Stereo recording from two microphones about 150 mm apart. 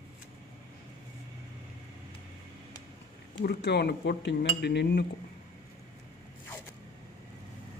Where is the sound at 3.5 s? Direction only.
90° left.